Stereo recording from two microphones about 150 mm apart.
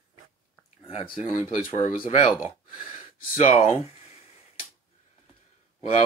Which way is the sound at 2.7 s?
55° left (ahead or behind).